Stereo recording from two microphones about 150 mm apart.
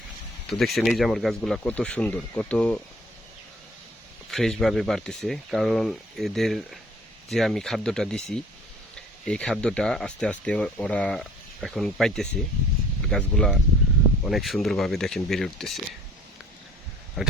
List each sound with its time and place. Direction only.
0.4 s speech: centre (ahead or behind)
4.3 s speech: centre (ahead or behind)
17.2 s speech: centre (ahead or behind)